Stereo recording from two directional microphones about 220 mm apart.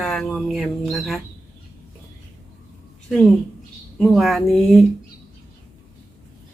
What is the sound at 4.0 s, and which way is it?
Speech, centre (ahead or behind).